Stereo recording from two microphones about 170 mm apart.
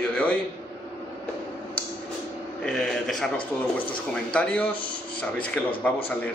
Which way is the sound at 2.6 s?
5° left (ahead or behind).